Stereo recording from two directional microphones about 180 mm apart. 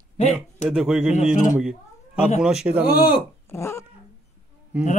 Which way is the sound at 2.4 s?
5° right (ahead or behind).